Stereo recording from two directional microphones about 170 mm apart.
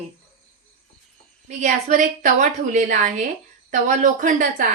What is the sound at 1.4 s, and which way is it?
A woman's voice, 45° right (ahead or behind).